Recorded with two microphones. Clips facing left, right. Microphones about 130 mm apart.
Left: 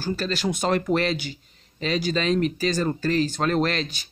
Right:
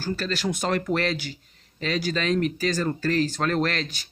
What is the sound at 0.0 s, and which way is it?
Speech, 20° left (ahead or behind).